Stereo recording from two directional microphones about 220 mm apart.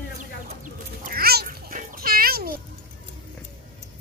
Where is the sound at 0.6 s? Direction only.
40° right (ahead or behind).